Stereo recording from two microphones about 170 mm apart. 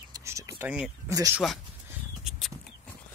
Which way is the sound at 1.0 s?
20° right (ahead or behind).